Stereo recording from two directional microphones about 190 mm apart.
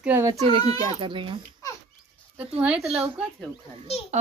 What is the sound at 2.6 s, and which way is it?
Speech, 5° right (ahead or behind).